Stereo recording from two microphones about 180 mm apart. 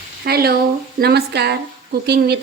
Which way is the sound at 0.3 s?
60° right (ahead or behind).